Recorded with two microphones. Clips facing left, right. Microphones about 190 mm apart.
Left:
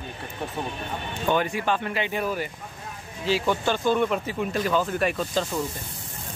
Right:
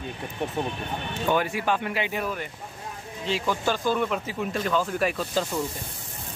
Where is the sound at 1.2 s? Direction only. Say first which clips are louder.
Left 1 dB; 5° right (ahead or behind).